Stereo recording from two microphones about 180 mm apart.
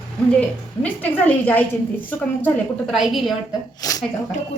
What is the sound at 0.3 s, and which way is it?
A woman's voice, 5° left (ahead or behind).